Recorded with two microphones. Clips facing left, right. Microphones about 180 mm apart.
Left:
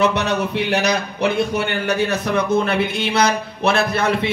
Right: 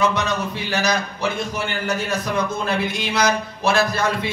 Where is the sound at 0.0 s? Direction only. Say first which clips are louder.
Left 3 dB; 65° left (ahead or behind).